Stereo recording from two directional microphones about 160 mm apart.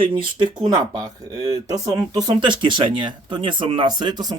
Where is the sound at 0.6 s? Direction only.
20° right (ahead or behind).